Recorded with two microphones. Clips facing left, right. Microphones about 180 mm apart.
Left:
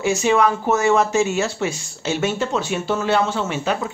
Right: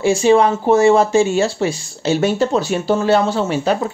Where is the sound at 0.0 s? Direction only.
30° right (ahead or behind).